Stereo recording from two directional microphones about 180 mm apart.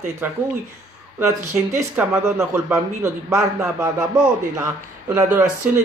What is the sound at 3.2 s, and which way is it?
Speech, 15° right (ahead or behind).